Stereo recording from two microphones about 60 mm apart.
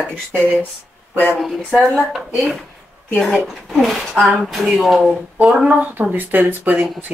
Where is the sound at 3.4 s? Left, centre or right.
Centre.